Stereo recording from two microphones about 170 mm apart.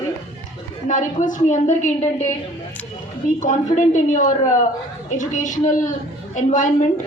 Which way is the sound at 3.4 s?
45° left (ahead or behind).